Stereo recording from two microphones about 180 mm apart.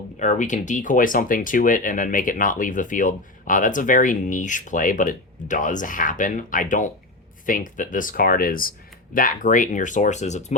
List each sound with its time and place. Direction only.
0.2 s speech: 45° left (ahead or behind)